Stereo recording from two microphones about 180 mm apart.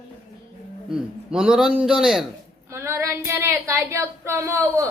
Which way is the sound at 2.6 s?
15° right (ahead or behind).